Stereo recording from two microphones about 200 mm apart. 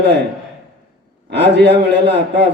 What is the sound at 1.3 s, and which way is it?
A man's voice, 60° right (ahead or behind).